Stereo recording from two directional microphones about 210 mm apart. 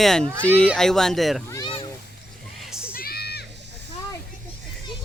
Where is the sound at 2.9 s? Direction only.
45° left (ahead or behind).